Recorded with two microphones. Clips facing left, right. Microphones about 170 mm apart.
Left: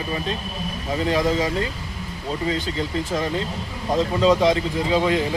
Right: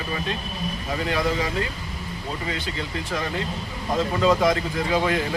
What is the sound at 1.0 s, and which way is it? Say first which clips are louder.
Speech: left 4 dB; 25° left (ahead or behind).